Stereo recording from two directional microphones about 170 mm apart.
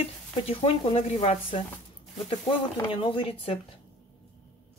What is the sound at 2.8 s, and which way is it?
Speech, 30° left (ahead or behind).